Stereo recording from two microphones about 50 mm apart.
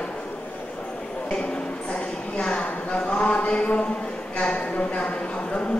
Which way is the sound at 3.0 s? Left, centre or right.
Left.